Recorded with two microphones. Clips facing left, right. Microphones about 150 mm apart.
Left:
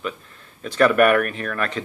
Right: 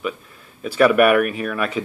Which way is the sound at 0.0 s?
10° right (ahead or behind).